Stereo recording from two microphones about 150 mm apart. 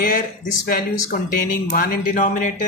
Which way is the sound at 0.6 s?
80° left.